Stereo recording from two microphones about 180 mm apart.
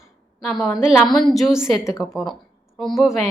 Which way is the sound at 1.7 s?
15° left (ahead or behind).